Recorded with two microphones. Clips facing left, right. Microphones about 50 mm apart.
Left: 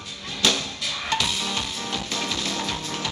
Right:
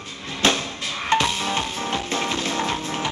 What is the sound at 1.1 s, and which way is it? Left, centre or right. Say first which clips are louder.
Music: right 6 dB; right.